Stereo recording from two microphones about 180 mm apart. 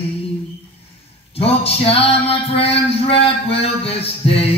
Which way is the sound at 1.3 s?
35° left (ahead or behind).